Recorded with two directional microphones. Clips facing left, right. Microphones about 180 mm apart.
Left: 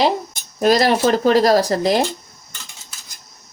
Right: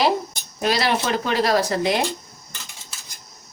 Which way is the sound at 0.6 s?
45° left (ahead or behind).